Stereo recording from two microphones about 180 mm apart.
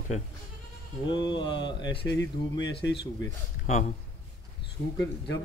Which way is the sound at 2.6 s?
75° left (ahead or behind).